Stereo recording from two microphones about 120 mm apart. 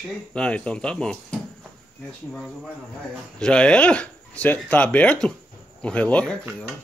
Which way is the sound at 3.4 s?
5° left (ahead or behind).